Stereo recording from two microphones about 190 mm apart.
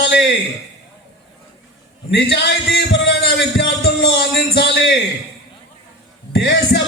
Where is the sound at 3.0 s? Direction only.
65° left (ahead or behind).